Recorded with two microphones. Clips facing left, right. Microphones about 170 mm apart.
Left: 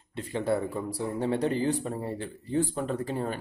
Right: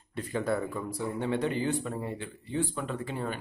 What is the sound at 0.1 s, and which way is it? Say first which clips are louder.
Speech: left 2 dB; 25° left (ahead or behind).